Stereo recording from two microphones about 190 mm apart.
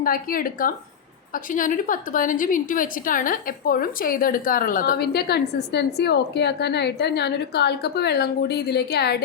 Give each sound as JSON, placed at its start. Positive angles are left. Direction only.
{"t": 0.0, "sound": "a woman's voice", "side_deg": 50}